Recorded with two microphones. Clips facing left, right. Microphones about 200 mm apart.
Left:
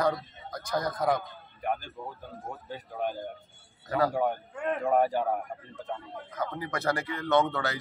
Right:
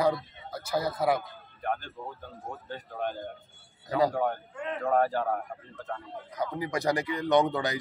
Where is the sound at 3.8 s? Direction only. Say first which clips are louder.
Right 1 dB; 15° right (ahead or behind).